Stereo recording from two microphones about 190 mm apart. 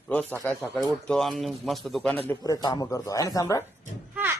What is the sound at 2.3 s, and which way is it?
Speech, 20° left (ahead or behind).